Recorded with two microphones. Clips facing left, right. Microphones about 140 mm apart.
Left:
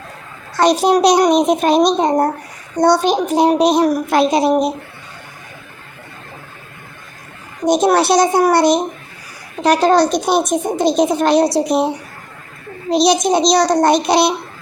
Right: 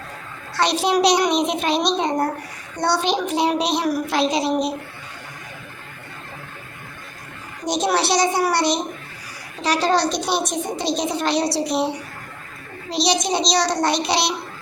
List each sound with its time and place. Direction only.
0.5 s a woman's voice: 45° left (ahead or behind)
7.6 s a woman's voice: 50° left (ahead or behind)